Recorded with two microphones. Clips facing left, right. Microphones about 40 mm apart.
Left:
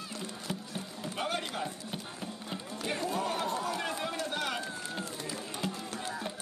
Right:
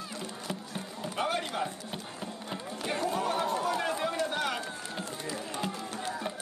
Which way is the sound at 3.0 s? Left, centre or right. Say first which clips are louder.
Right 4 dB; right.